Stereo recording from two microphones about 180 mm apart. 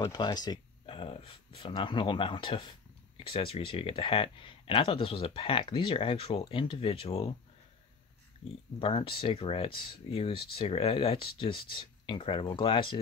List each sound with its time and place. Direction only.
0.0 s speech: 25° left (ahead or behind)
8.5 s speech: 30° left (ahead or behind)